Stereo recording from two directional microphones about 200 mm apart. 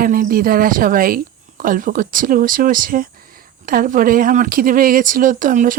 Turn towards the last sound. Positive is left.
turn(degrees=-40)  # may be behind; listen again after turning